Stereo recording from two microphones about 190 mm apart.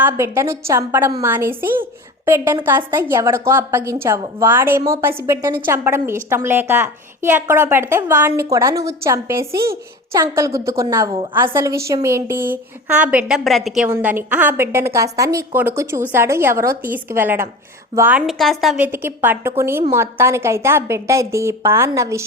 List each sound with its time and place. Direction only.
0.0 s a woman's voice: 15° right (ahead or behind)
18.3 s a woman's voice: centre (ahead or behind)
18.9 s a woman's voice: 10° right (ahead or behind)